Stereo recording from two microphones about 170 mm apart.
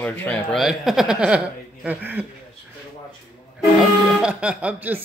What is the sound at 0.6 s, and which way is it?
Speech, centre (ahead or behind).